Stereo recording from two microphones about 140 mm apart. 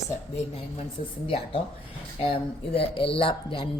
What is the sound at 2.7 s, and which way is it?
Speech, 40° left (ahead or behind).